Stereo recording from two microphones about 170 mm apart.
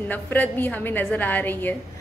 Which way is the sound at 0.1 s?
10° left (ahead or behind).